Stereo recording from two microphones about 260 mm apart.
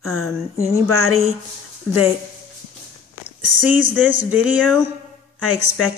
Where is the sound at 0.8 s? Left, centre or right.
Right.